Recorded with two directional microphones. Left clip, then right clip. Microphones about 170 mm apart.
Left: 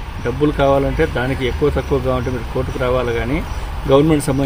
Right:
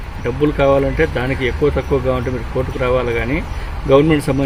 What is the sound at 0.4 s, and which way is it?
Speech, 15° right (ahead or behind).